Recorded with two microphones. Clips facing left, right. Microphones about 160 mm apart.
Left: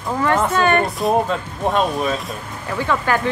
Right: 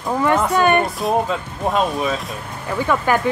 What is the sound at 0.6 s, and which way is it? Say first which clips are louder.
Speech: right 2 dB; 15° right (ahead or behind).